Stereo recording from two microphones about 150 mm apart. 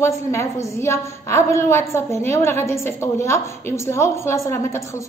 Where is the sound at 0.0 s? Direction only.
20° left (ahead or behind).